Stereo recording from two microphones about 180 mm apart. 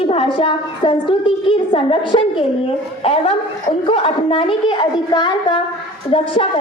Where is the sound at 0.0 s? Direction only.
30° left (ahead or behind).